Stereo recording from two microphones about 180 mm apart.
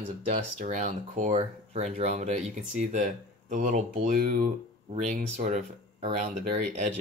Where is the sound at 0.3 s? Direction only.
40° right (ahead or behind).